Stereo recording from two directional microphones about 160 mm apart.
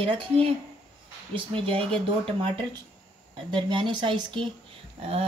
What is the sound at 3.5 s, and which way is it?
Speech, 30° right (ahead or behind).